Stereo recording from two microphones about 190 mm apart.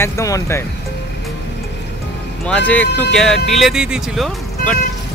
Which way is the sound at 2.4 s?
5° left (ahead or behind).